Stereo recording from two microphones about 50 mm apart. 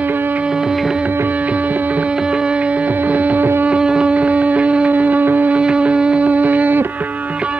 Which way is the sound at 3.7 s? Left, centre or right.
Centre.